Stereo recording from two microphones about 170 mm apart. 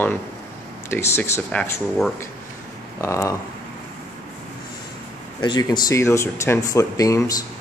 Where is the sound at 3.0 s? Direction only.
15° left (ahead or behind).